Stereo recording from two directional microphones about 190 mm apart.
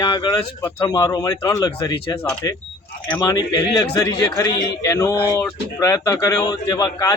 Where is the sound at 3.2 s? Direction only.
20° left (ahead or behind).